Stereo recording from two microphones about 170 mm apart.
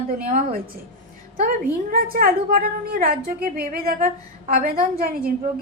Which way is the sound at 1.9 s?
60° right (ahead or behind).